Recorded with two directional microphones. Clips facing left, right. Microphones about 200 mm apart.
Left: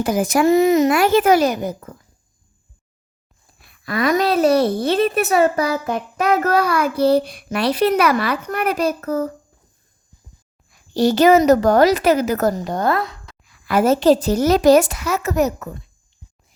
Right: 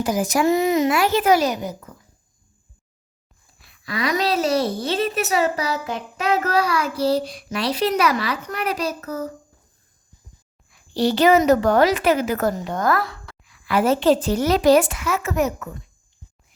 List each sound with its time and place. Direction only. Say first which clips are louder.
0.0 s a child's voice: left 3 dB; 55° left (ahead or behind)
3.7 s a child's voice: left 5 dB; 50° left (ahead or behind)
10.7 s a woman's voice: left 4 dB; 45° left (ahead or behind); by 13.3 s 20° left (ahead or behind)
13.4 s a woman's voice: left 3 dB; 40° left (ahead or behind)